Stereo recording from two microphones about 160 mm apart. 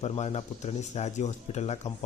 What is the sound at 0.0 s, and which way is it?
A man's voice, 40° left (ahead or behind).